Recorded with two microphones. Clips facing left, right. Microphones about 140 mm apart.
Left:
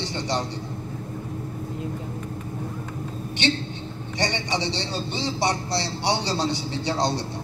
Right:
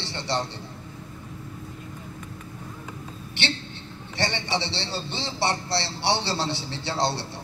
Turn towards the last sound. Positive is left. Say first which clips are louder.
# left 2 dB
turn(degrees=15)  # may be behind; listen again after turning